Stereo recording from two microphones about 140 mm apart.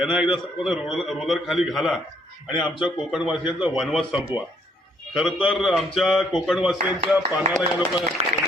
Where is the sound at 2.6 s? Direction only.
35° left (ahead or behind).